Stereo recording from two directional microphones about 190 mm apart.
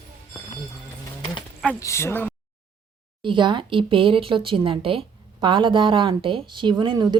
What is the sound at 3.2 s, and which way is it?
Speech, 25° right (ahead or behind).